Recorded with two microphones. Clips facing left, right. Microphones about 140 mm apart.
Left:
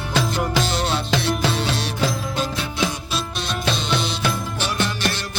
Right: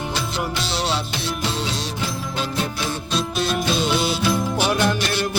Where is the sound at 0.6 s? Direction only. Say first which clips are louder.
Left 3 dB; 50° left (ahead or behind).